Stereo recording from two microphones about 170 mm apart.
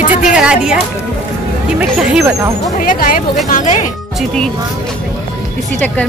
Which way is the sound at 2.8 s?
55° left (ahead or behind).